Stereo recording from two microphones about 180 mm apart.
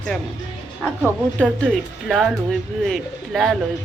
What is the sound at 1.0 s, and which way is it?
Speech, 5° right (ahead or behind).